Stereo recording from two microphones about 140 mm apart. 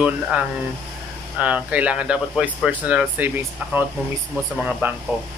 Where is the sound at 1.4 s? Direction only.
10° right (ahead or behind).